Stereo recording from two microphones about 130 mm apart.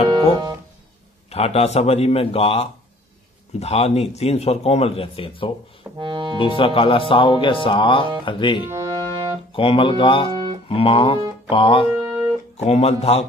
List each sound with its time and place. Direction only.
1.3 s speech: 50° left (ahead or behind)
5.9 s speech: 40° right (ahead or behind)
6.3 s speech: 45° left (ahead or behind)
8.7 s music: 30° right (ahead or behind)
9.5 s speech: 45° left (ahead or behind)
11.9 s music: 20° right (ahead or behind)
12.5 s speech: 55° left (ahead or behind)